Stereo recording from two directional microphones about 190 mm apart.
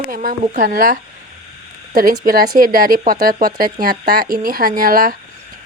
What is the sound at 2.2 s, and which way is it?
Speech, 50° right (ahead or behind).